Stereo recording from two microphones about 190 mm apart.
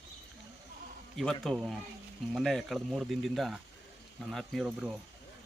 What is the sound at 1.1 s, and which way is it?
Speech, centre (ahead or behind).